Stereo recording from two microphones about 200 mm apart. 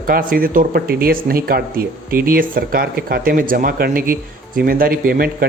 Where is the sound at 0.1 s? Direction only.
45° right (ahead or behind).